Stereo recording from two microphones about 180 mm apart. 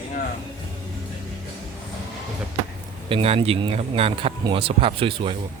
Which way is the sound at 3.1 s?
30° right (ahead or behind).